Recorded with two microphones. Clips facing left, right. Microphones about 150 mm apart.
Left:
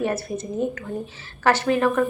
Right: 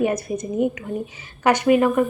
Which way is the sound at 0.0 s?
15° right (ahead or behind).